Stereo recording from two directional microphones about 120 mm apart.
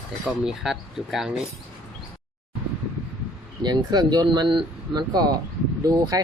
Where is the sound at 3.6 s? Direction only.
35° right (ahead or behind).